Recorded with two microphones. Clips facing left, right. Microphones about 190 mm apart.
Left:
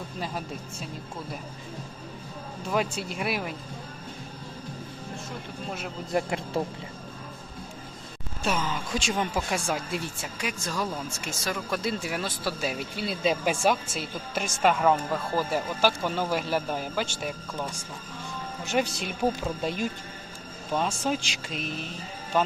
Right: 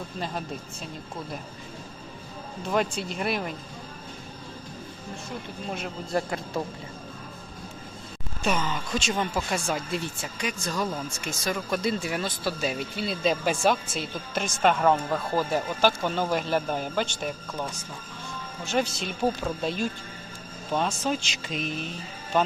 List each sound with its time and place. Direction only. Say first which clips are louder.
2.6 s speech: right 2 dB; 5° left (ahead or behind)
6.1 s a man's voice: left 1 dB; 20° left (ahead or behind)
8.4 s speech: right 1 dB; centre (ahead or behind)
18.6 s speech: even; 15° left (ahead or behind)